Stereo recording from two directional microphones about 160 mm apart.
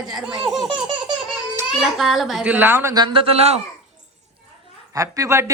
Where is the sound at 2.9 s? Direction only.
30° right (ahead or behind).